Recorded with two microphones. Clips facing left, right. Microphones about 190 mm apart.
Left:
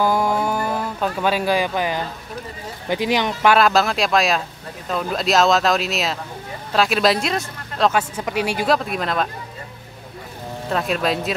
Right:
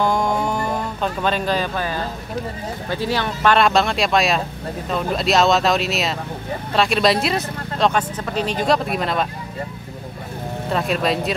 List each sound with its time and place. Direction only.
0.0 s a sound: 5° left (ahead or behind)
2.9 s speech: 15° left (ahead or behind)
3.5 s speech: centre (ahead or behind)
8.3 s speech: 10° left (ahead or behind)
10.7 s speech: centre (ahead or behind)